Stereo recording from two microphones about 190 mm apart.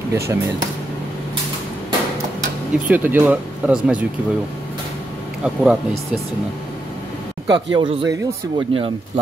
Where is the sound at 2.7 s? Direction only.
5° right (ahead or behind).